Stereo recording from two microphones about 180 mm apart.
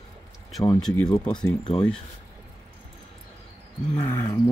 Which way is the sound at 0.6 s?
20° left (ahead or behind).